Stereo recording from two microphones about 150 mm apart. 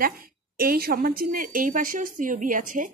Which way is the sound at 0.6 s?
80° right.